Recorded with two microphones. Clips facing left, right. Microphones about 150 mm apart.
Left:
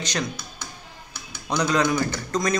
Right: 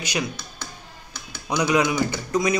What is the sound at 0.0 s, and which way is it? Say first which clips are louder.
Speech: right 1 dB; 10° right (ahead or behind).